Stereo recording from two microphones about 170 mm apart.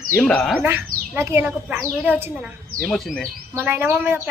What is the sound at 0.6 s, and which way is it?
A child's voice, 15° right (ahead or behind).